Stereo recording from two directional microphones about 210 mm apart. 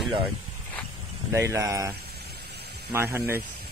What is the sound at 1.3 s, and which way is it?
Speech, 15° right (ahead or behind).